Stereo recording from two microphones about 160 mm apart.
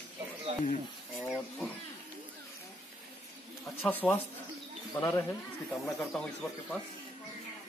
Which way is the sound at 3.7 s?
10° left (ahead or behind).